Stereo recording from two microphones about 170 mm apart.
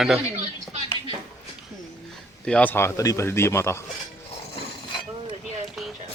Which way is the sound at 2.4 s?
5° left (ahead or behind).